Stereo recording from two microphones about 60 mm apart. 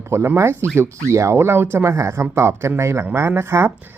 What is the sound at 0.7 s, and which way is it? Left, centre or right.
Speech, right.